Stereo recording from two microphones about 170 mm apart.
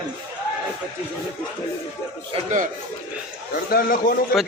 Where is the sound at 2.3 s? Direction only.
45° right (ahead or behind).